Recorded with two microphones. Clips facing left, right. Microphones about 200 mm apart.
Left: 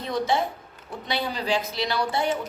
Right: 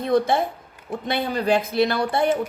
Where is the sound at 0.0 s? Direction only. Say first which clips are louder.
Right 5 dB; 55° right (ahead or behind).